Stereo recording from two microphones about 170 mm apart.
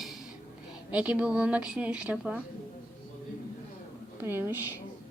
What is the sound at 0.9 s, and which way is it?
A woman's voice, 5° right (ahead or behind).